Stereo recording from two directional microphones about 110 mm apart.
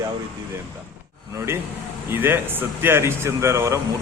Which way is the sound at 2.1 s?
20° right (ahead or behind).